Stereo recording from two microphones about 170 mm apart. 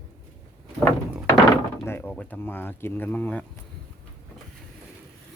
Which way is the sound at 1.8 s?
15° left (ahead or behind).